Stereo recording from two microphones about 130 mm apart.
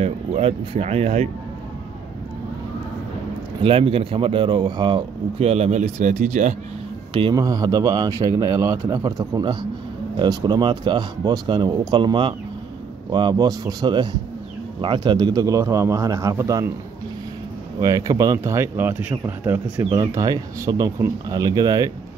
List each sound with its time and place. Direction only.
0.0 s speech: 50° right (ahead or behind)
3.6 s speech: 45° right (ahead or behind)
5.4 s speech: 55° right (ahead or behind)
7.3 s speech: 30° right (ahead or behind)
17.7 s speech: 25° right (ahead or behind)
19.9 s speech: 25° right (ahead or behind)